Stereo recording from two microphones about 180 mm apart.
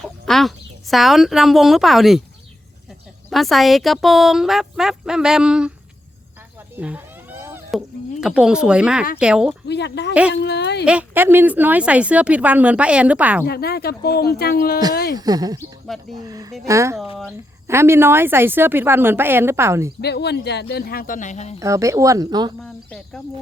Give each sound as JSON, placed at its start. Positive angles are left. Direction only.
{"t": 0.0, "sound": "speech", "side_deg": 0}
{"t": 3.2, "sound": "speech", "side_deg": 0}
{"t": 6.7, "sound": "a sound", "side_deg": -10}
{"t": 7.7, "sound": "speech", "side_deg": -5}
{"t": 9.6, "sound": "speech", "side_deg": 70}
{"t": 10.8, "sound": "speech", "side_deg": -10}
{"t": 13.4, "sound": "speech", "side_deg": 60}
{"t": 15.2, "sound": "speech", "side_deg": -20}
{"t": 20.0, "sound": "speech", "side_deg": 65}
{"t": 21.6, "sound": "speech", "side_deg": -15}
{"t": 22.6, "sound": "speech", "side_deg": 5}